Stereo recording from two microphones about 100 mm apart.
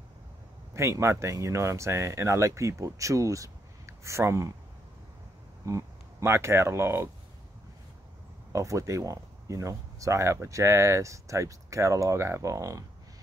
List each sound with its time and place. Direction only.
0.7 s speech: 25° right (ahead or behind)
5.7 s speech: 30° right (ahead or behind)
8.5 s speech: 30° right (ahead or behind)